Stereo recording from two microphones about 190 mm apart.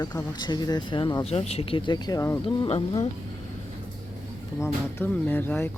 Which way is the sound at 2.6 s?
25° left (ahead or behind).